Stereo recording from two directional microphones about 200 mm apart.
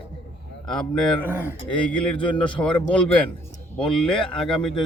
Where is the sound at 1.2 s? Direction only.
10° right (ahead or behind).